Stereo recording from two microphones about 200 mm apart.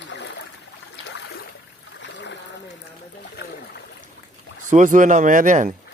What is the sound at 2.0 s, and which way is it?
Trickle, 60° left (ahead or behind).